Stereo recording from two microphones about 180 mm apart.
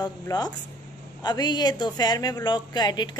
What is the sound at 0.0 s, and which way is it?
A woman's voice, 20° left (ahead or behind).